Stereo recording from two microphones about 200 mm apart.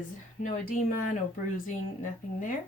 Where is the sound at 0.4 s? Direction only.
40° left (ahead or behind).